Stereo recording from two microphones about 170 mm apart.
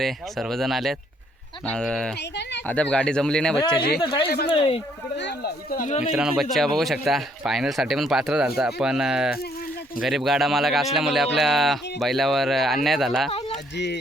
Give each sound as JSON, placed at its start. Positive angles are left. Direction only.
{"t": 0.0, "sound": "speech", "side_deg": 0}
{"t": 4.0, "sound": "speech", "side_deg": 30}
{"t": 5.1, "sound": "speech", "side_deg": 80}
{"t": 5.8, "sound": "speech", "side_deg": 40}
{"t": 6.1, "sound": "speech", "side_deg": -5}
{"t": 13.7, "sound": "speech", "side_deg": 90}